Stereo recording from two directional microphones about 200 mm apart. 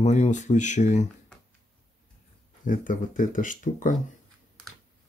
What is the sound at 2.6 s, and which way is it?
Speech, 40° left (ahead or behind).